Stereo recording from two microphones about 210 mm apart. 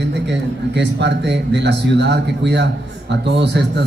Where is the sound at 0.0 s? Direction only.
55° right (ahead or behind).